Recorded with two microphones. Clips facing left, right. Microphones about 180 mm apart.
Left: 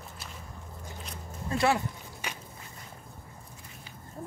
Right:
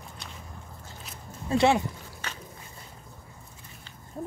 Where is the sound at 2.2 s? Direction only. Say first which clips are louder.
Left 1 dB; 15° left (ahead or behind).